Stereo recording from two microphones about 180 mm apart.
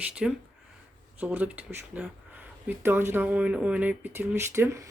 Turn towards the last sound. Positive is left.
turn(degrees=-15)  # may be behind; listen again after turning